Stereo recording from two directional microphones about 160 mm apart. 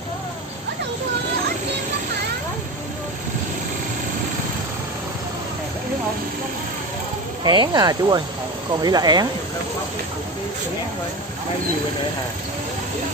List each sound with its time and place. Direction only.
7.4 s speech: 25° right (ahead or behind)